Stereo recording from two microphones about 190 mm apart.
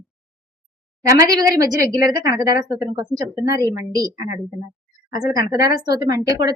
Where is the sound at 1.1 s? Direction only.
20° right (ahead or behind).